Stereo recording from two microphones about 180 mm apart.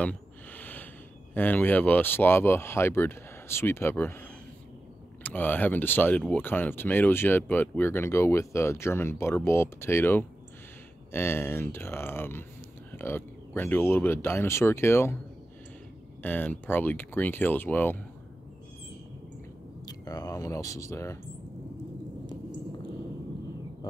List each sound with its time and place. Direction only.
0.0 s a sound: 10° left (ahead or behind)
1.3 s speech: 10° left (ahead or behind)
5.2 s speech: 10° left (ahead or behind)
16.2 s speech: 10° left (ahead or behind)
19.9 s speech: 20° left (ahead or behind)